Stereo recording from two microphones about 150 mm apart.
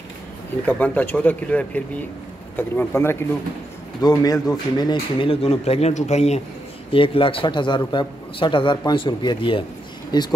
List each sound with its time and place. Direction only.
0.7 s speech: 10° left (ahead or behind); by 5.3 s 30° left (ahead or behind)
5.3 s a man's voice: 45° left (ahead or behind)
6.9 s a man's voice: 35° left (ahead or behind)